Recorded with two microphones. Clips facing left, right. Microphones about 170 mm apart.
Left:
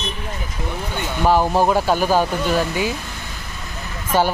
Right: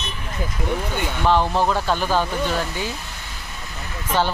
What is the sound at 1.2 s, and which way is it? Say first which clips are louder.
Speech: left 3 dB; 10° left (ahead or behind).